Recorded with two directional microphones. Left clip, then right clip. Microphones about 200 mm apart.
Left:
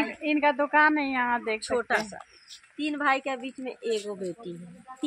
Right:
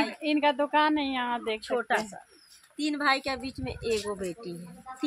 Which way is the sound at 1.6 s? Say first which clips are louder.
Left 1 dB; 60° left (ahead or behind).